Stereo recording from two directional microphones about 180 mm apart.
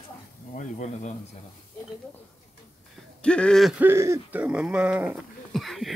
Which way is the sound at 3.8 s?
15° right (ahead or behind).